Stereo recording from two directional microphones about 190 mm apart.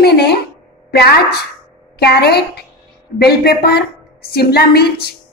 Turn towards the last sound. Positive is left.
turn(degrees=55)  # may be behind; listen again after turning